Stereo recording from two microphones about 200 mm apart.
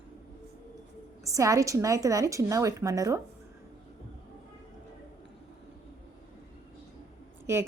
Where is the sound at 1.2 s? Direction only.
15° right (ahead or behind).